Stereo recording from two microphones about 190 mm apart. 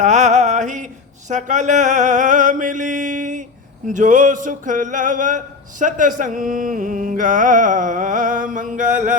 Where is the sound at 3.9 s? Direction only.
40° right (ahead or behind).